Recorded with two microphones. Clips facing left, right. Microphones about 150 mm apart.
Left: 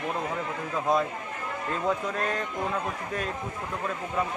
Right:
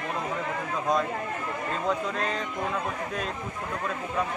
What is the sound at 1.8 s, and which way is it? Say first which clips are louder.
Speech: left 1 dB; 5° left (ahead or behind).